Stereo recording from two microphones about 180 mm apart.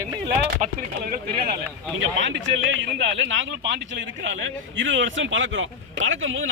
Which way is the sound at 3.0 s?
90° right.